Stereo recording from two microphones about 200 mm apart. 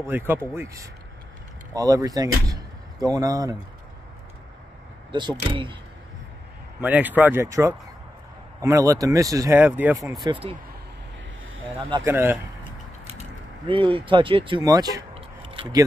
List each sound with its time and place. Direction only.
0.0 s speech: 10° right (ahead or behind)
5.1 s speech: 20° right (ahead or behind)
6.8 s speech: 10° right (ahead or behind)
11.9 s speech: 15° right (ahead or behind)
13.0 s mechanisms: 30° right (ahead or behind)